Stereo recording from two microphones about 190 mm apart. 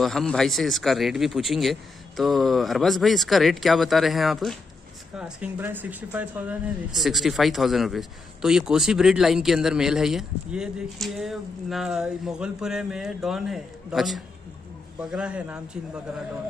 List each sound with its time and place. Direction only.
0.0 s speech: centre (ahead or behind)